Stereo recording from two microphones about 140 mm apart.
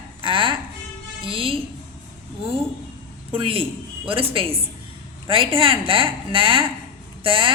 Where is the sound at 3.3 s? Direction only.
40° right (ahead or behind).